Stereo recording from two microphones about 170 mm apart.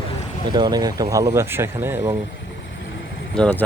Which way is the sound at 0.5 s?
25° right (ahead or behind).